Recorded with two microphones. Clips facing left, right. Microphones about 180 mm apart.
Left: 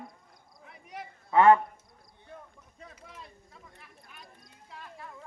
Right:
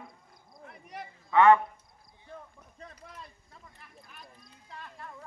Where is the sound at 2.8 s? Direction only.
Centre (ahead or behind).